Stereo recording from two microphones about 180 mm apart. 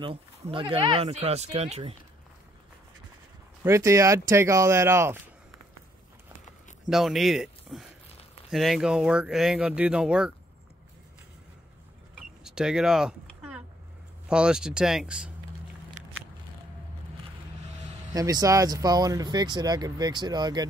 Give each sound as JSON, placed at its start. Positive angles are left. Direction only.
{"t": 0.0, "sound": "speech", "side_deg": -30}
{"t": 3.6, "sound": "speech", "side_deg": -15}
{"t": 6.9, "sound": "speech", "side_deg": 0}
{"t": 12.2, "sound": "a sound", "side_deg": -5}
{"t": 14.3, "sound": "speech", "side_deg": -5}
{"t": 18.1, "sound": "speech", "side_deg": -20}